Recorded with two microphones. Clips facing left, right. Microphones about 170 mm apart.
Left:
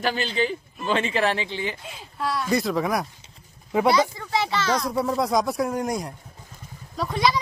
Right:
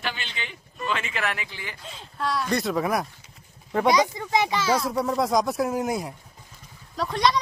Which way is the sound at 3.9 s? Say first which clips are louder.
Right 3 dB; 15° right (ahead or behind).